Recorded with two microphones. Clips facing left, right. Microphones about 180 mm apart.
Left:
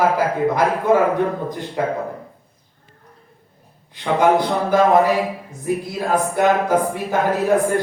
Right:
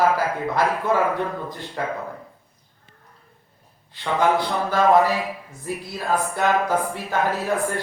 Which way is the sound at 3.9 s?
15° left (ahead or behind).